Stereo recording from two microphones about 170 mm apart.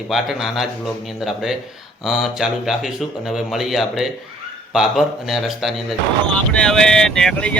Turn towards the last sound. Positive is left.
turn(degrees=5)  # may be behind; listen again after turning